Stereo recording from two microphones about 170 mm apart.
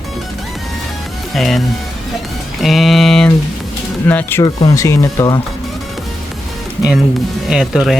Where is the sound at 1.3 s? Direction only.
Centre (ahead or behind).